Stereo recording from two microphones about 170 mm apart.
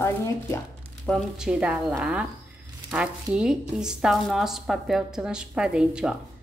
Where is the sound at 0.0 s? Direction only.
15° left (ahead or behind).